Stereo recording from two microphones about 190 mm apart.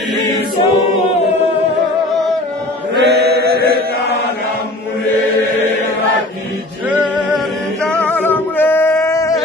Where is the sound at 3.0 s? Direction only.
60° right (ahead or behind).